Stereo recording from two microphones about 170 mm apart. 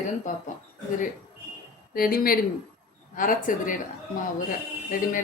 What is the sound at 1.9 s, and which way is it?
Speech, 60° left (ahead or behind).